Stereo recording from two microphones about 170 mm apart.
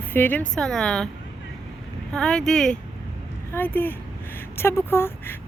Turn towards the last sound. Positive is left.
turn(degrees=15)  # may be behind; listen again after turning